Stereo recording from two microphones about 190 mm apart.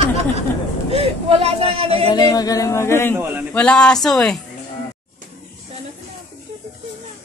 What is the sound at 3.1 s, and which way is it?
Speech, 10° right (ahead or behind).